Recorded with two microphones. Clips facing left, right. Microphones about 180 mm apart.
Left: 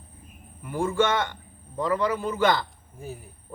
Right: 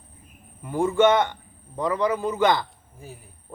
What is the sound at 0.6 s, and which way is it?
A man's voice, 20° right (ahead or behind).